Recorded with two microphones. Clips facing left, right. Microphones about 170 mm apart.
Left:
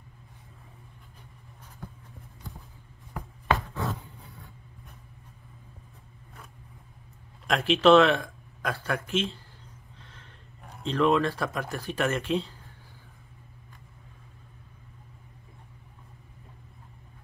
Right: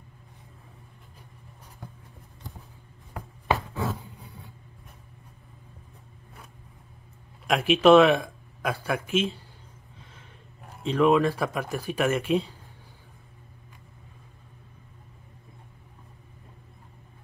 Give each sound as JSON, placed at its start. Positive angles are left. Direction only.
{"t": 3.5, "sound": "chopping", "side_deg": -5}
{"t": 7.4, "sound": "speech", "side_deg": -10}
{"t": 10.8, "sound": "speech", "side_deg": -10}